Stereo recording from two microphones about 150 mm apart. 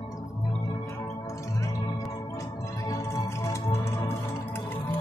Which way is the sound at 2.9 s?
20° left (ahead or behind).